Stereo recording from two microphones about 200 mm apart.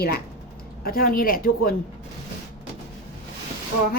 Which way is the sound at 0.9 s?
45° left (ahead or behind).